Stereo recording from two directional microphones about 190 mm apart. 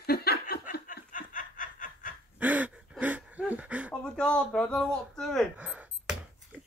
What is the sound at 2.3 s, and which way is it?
Gasp, 5° right (ahead or behind).